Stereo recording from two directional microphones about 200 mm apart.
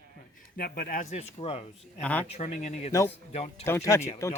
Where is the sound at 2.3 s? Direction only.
35° left (ahead or behind).